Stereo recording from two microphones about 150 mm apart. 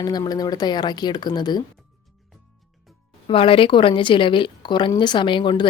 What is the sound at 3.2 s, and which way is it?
A woman's voice, 35° left (ahead or behind).